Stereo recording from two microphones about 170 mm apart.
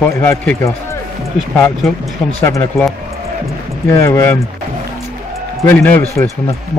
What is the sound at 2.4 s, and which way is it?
Speech, 15° left (ahead or behind).